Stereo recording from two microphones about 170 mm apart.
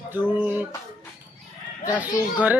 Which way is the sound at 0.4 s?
10° right (ahead or behind).